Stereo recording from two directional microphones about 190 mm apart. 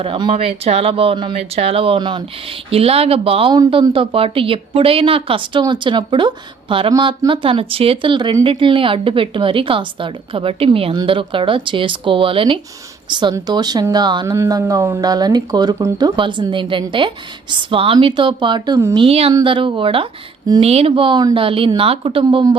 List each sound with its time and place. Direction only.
0.0 s speech: 30° right (ahead or behind)
18.9 s a woman's voice: 30° right (ahead or behind)